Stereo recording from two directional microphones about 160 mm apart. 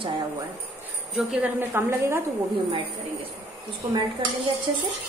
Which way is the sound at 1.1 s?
5° right (ahead or behind).